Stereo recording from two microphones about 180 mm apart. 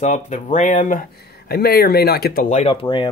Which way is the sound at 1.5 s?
60° left (ahead or behind).